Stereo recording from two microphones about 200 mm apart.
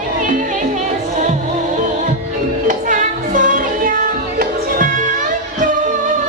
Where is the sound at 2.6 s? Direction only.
40° right (ahead or behind).